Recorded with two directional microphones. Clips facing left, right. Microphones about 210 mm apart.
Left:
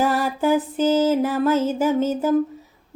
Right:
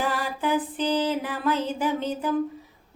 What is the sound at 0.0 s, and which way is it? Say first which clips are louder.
Music: left 7 dB; 40° left (ahead or behind).